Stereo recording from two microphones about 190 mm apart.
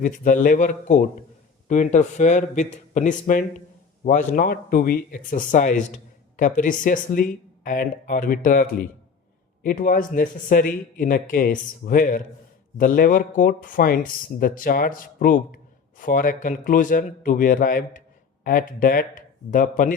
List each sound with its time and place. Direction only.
0.0 s speech: 45° left (ahead or behind)